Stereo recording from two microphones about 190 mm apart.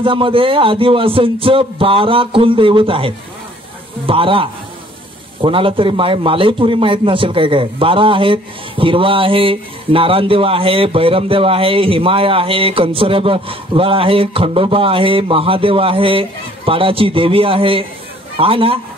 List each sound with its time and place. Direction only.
0.0 s a man's voice: 25° right (ahead or behind)